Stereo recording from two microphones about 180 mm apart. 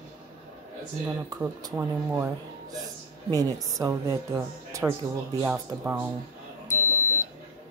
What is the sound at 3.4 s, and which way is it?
A woman's voice, 20° right (ahead or behind).